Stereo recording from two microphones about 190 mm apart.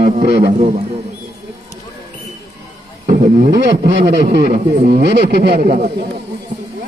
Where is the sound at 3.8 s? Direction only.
60° right (ahead or behind).